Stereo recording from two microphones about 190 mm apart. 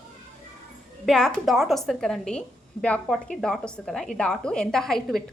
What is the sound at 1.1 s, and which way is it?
A woman's voice, centre (ahead or behind).